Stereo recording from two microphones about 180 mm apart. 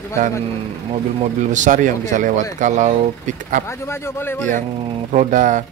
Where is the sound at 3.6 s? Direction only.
15° left (ahead or behind).